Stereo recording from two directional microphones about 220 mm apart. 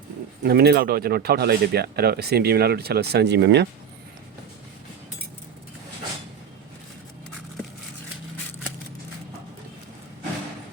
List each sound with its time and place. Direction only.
0.4 s speech: 45° right (ahead or behind)